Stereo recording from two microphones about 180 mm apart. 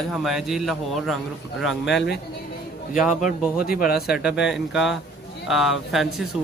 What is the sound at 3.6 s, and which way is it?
Speech, 55° left (ahead or behind).